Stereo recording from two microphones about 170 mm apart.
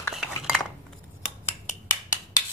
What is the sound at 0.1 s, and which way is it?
Dishes, centre (ahead or behind).